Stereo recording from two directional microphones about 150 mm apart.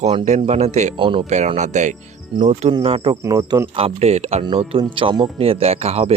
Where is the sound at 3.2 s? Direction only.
20° right (ahead or behind).